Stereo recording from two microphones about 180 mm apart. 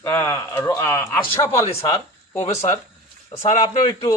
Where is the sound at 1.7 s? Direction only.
35° left (ahead or behind).